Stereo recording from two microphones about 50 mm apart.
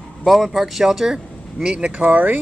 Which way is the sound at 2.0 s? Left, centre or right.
Right.